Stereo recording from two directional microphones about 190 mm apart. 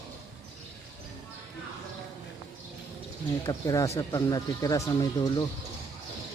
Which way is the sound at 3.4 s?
15° left (ahead or behind).